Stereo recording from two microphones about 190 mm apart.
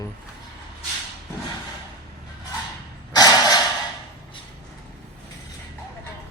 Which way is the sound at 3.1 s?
20° left (ahead or behind).